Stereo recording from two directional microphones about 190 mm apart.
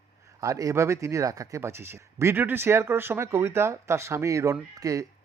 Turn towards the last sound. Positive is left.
turn(degrees=-15)  # may be behind; listen again after turning